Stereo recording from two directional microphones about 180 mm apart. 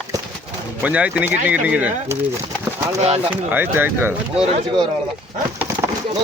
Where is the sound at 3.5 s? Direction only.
10° right (ahead or behind).